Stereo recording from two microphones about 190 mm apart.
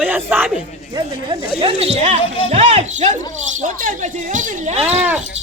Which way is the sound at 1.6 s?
30° right (ahead or behind).